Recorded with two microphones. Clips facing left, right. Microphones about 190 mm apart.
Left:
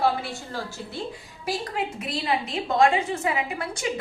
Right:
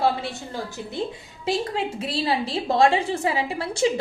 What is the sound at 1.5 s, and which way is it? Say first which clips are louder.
A woman's voice: right 4 dB; 30° right (ahead or behind).